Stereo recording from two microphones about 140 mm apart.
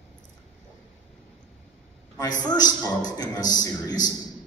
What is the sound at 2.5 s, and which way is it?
A man's voice, 30° left (ahead or behind).